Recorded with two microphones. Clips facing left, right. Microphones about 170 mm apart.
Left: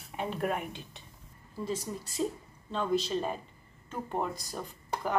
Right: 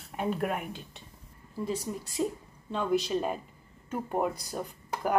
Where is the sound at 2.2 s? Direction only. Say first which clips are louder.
Right 2 dB; 15° right (ahead or behind).